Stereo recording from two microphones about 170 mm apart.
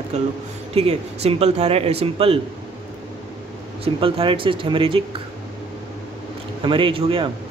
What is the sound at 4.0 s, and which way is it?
Speech, 30° right (ahead or behind).